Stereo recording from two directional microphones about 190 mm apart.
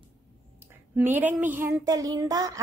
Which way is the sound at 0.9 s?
10° right (ahead or behind).